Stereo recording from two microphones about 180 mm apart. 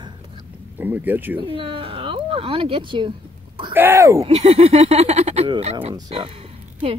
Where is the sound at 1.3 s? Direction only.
30° right (ahead or behind).